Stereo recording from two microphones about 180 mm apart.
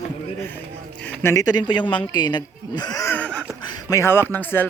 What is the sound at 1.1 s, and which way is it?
Speech, 15° left (ahead or behind).